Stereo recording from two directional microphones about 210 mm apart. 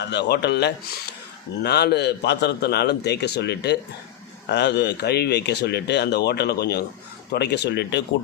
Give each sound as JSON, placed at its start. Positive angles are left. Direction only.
{"t": 0.0, "sound": "speech", "side_deg": 55}